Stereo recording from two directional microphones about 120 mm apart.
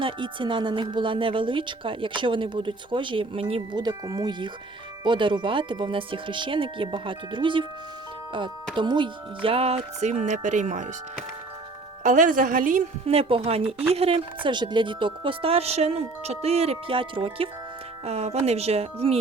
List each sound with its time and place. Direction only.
0.0 s speech: 45° right (ahead or behind)
8.7 s speech: 40° right (ahead or behind); by 10.8 s 90° right
12.0 s speech: 90° right
13.1 s speech: 55° right (ahead or behind)
18.0 s speech: 60° right (ahead or behind)